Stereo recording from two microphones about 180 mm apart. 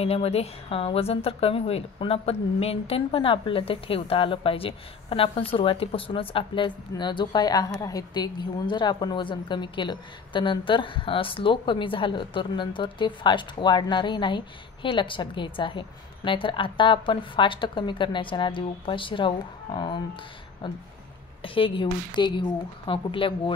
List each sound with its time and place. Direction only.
0.0 s a woman's voice: 35° left (ahead or behind)